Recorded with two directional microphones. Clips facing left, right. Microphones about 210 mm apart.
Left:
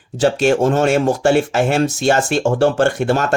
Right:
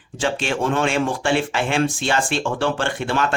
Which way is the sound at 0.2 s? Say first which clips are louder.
Left 8 dB; 40° left (ahead or behind).